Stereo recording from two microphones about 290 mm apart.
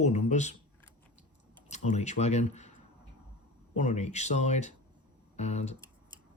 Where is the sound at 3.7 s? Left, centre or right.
Left.